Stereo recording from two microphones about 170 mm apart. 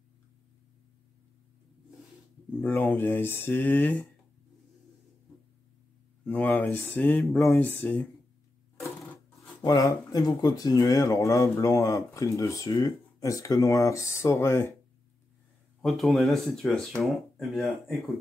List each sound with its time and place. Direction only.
2.6 s speech: 15° left (ahead or behind)
6.2 s speech: 10° left (ahead or behind)
15.8 s speech: centre (ahead or behind)